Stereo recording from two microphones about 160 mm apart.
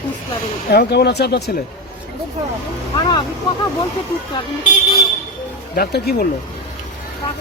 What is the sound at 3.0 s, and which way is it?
Speech, 30° left (ahead or behind).